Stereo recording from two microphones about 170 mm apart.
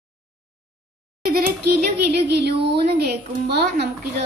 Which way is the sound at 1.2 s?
60° right (ahead or behind).